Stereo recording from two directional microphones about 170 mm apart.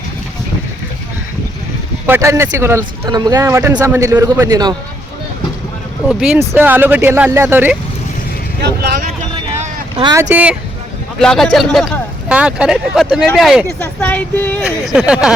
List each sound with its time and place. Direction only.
2.0 s speech: 15° right (ahead or behind)
6.1 s speech: 5° right (ahead or behind)
8.6 s vehicle: 70° right (ahead or behind)
9.9 s speech: 30° right (ahead or behind)
10.2 s speech: 10° right (ahead or behind)
11.2 s speech: 5° left (ahead or behind)
13.7 s speech: 10° left (ahead or behind)
14.6 s speech: 5° right (ahead or behind)